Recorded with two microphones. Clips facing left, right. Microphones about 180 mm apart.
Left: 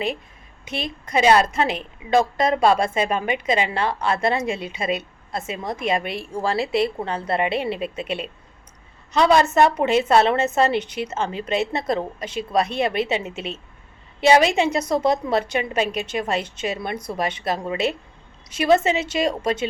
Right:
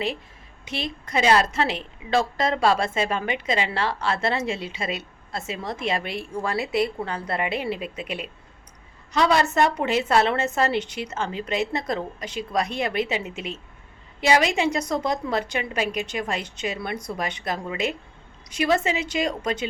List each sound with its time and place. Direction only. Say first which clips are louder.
0.6 s a woman's voice: left 1 dB; 20° left (ahead or behind)
6.4 s a woman's voice: left 3 dB; 30° left (ahead or behind)
10.8 s a woman's voice: left 2 dB; 20° right (ahead or behind)
11.7 s a woman's voice: left 3 dB; 25° left (ahead or behind)
15.9 s a woman's voice: left 1 dB; 15° right (ahead or behind)
16.1 s a woman's voice: left 4 dB; 25° left (ahead or behind)